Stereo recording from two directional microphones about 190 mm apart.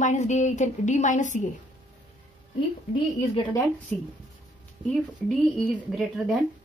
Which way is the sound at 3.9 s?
5° left (ahead or behind).